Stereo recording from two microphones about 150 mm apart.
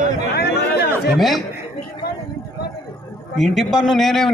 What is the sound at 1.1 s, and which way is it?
Speech, centre (ahead or behind).